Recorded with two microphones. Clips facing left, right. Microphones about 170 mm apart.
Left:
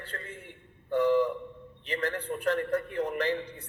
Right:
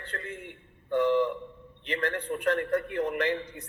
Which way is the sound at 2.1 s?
30° left (ahead or behind).